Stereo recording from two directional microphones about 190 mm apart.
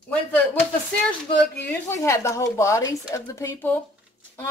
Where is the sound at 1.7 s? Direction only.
15° left (ahead or behind).